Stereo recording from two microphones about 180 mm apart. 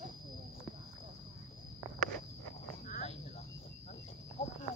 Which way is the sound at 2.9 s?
45° left (ahead or behind).